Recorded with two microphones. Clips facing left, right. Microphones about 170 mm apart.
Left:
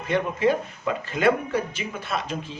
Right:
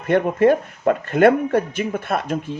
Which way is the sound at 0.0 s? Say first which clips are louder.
Right 7 dB; 55° right (ahead or behind).